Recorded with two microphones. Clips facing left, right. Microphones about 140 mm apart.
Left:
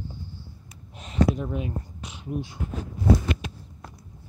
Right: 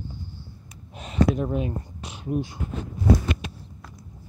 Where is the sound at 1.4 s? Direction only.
45° right (ahead or behind).